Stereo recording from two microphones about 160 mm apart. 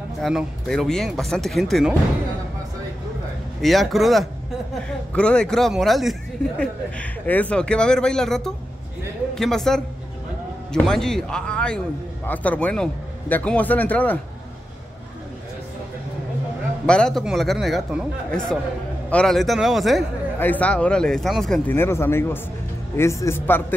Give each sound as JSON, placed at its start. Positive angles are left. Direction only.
{"t": 0.2, "sound": "speech", "side_deg": 0}
{"t": 3.6, "sound": "a woman's voice", "side_deg": 0}
{"t": 16.8, "sound": "speech", "side_deg": 5}
{"t": 20.3, "sound": "a man's voice", "side_deg": 10}
{"t": 21.7, "sound": "a man's voice", "side_deg": 15}